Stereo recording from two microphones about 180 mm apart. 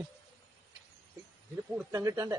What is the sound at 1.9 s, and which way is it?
Speech, 15° right (ahead or behind).